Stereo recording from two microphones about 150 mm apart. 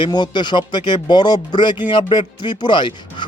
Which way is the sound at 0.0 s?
30° left (ahead or behind).